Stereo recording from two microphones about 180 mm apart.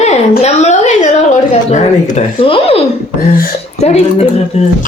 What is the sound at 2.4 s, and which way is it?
Speech, 30° left (ahead or behind).